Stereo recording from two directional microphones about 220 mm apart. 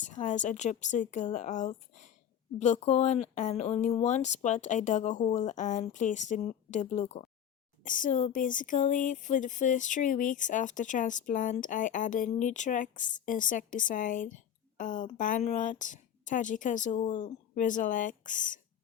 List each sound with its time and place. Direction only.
0.0 s speech: 35° left (ahead or behind)